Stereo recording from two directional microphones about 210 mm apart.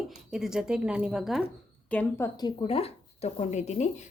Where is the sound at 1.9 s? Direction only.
10° left (ahead or behind).